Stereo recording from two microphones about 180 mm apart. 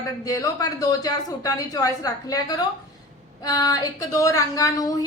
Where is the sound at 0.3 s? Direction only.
20° left (ahead or behind).